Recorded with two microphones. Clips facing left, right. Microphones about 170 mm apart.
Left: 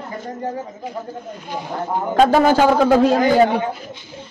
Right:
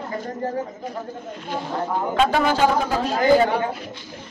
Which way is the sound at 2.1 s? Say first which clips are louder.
Left 7 dB; 40° left (ahead or behind).